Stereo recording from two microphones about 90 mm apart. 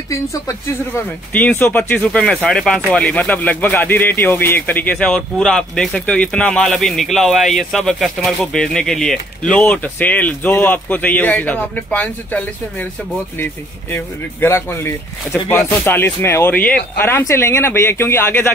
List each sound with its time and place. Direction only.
0.1 s speech: 35° left (ahead or behind)
1.3 s speech: 20° left (ahead or behind)